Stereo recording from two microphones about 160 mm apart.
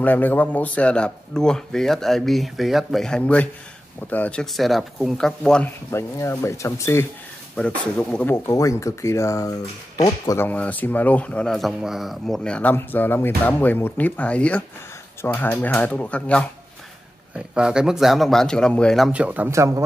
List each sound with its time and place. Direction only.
0.0 s speech: 10° left (ahead or behind)
5.9 s speech: 15° left (ahead or behind)
7.5 s speech: 5° left (ahead or behind)
17.6 s speech: 5° right (ahead or behind)